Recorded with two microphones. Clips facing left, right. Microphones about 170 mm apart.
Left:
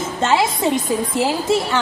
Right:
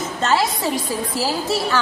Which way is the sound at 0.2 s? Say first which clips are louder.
Left 3 dB; 25° left (ahead or behind).